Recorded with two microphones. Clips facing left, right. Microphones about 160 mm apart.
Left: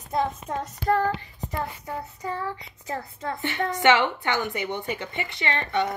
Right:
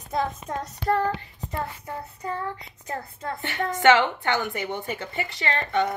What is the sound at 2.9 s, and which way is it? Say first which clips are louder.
A woman's voice: left 1 dB; 40° right (ahead or behind).